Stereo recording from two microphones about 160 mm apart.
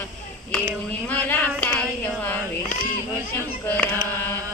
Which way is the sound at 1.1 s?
10° left (ahead or behind).